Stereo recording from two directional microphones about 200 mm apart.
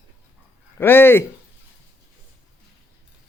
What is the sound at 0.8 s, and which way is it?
Speech, 10° left (ahead or behind).